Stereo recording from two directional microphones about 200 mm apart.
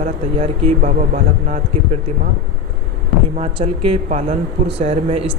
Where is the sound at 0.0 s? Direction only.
35° right (ahead or behind).